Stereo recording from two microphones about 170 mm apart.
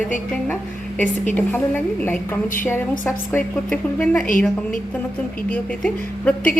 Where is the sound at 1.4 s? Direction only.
10° left (ahead or behind).